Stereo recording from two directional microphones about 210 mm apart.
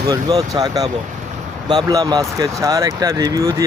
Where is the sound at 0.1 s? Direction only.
15° right (ahead or behind).